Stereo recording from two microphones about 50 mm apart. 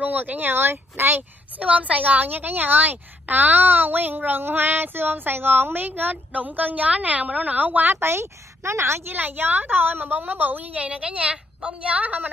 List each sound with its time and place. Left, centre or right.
0.0 s speech: right
1.6 s a woman's voice: right
8.0 s a woman's voice: right
9.1 s a woman's voice: right